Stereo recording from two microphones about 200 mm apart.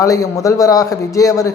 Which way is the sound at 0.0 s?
15° left (ahead or behind).